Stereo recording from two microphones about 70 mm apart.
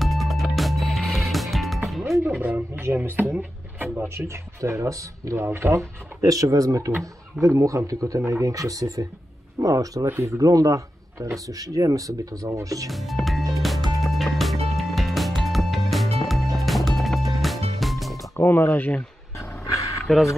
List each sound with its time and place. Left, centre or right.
0.0 s music: centre
2.2 s speech: right
2.8 s speech: right
3.2 s speech: right
4.1 s speech: right
6.3 s speech: right
10.0 s speech: right
12.9 s speech: centre
13.6 s music: centre
18.4 s speech: left
19.3 s dog: left